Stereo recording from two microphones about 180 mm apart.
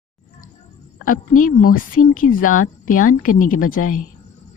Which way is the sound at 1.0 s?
50° left (ahead or behind).